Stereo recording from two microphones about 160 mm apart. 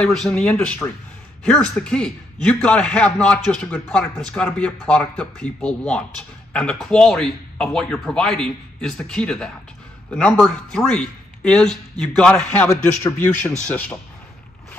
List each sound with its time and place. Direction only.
0.0 s a man's voice: 5° left (ahead or behind)